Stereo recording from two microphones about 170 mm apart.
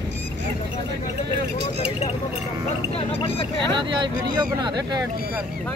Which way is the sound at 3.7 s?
25° right (ahead or behind).